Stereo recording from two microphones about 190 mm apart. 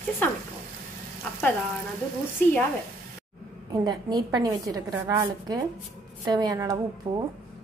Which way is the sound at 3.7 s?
20° right (ahead or behind).